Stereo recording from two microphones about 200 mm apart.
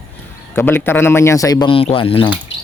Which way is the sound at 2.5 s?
65° left (ahead or behind).